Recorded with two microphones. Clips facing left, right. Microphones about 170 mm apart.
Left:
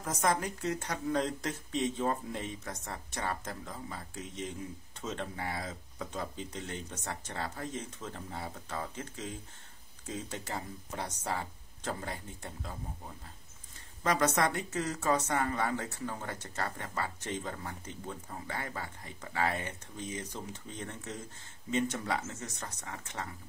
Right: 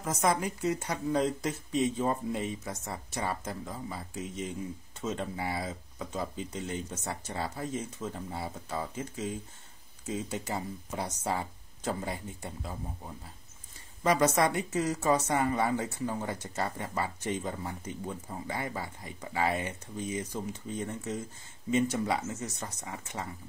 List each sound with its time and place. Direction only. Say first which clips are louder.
0.0 s speech: right 2 dB; 5° right (ahead or behind)
14.0 s speech: right 3 dB; 10° right (ahead or behind)